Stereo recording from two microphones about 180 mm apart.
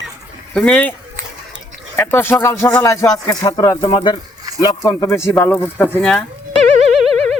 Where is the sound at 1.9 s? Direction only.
10° left (ahead or behind).